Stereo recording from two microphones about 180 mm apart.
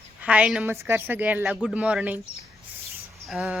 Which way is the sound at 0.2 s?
5° right (ahead or behind).